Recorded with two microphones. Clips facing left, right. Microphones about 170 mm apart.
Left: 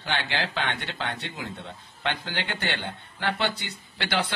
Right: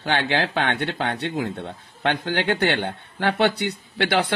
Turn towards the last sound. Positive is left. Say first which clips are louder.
# right 7 dB
turn(degrees=-60)  # may be behind; listen again after turning